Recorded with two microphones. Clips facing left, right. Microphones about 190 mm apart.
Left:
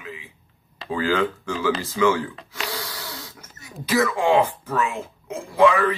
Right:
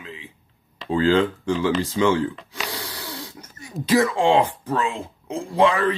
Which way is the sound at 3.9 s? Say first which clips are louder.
Right 2 dB; 30° right (ahead or behind).